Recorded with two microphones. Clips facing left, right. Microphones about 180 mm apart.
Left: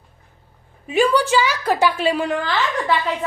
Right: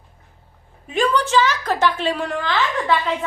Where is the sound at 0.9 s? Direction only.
10° left (ahead or behind).